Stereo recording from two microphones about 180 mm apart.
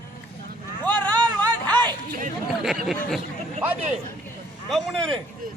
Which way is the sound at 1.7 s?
10° left (ahead or behind).